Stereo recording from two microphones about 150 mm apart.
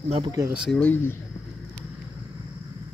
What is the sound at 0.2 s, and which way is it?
Speech, 20° right (ahead or behind).